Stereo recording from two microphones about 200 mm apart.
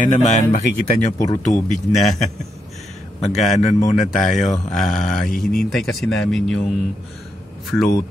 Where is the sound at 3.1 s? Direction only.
35° left (ahead or behind).